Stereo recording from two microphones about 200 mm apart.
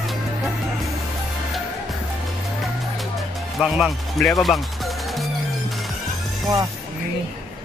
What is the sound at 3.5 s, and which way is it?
Speech, centre (ahead or behind).